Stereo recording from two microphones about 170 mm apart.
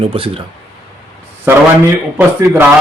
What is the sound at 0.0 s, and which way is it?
Speech, 35° right (ahead or behind).